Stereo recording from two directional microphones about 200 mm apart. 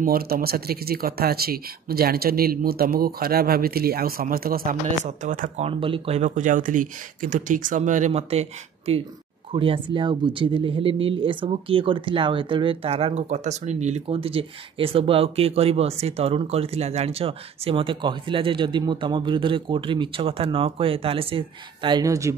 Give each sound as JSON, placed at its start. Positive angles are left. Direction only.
{"t": 0.0, "sound": "speech", "side_deg": -50}
{"t": 5.7, "sound": "speech", "side_deg": -25}